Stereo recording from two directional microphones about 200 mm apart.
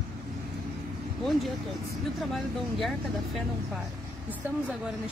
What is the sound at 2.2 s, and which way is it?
Speech, centre (ahead or behind).